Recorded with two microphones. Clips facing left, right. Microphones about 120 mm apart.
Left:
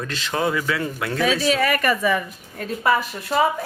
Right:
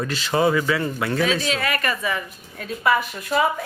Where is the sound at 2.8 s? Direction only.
35° left (ahead or behind).